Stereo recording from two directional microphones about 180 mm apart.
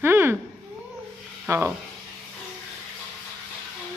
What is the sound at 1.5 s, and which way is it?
Speech, 15° right (ahead or behind).